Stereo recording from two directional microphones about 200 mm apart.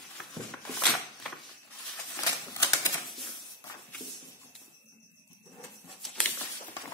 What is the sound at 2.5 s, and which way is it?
Typewriter, 15° left (ahead or behind).